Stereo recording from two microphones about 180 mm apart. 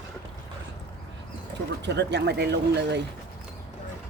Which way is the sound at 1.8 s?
70° right (ahead or behind).